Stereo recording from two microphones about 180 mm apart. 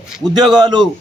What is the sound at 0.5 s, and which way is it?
Speech, 25° right (ahead or behind).